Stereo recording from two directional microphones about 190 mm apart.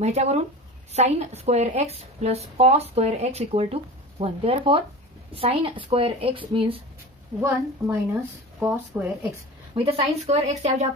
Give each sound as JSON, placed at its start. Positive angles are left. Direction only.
{"t": 0.0, "sound": "a woman's voice", "side_deg": -35}
{"t": 7.4, "sound": "speech", "side_deg": -15}
{"t": 9.8, "sound": "a woman's voice", "side_deg": -35}